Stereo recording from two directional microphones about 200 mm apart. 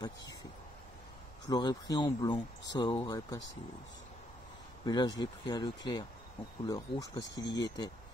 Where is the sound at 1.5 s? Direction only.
20° left (ahead or behind).